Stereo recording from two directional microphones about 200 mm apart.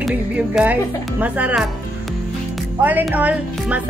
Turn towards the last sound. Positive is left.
turn(degrees=-5)  # may be behind; listen again after turning